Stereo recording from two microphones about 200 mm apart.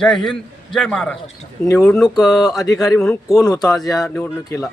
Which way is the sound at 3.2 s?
15° left (ahead or behind).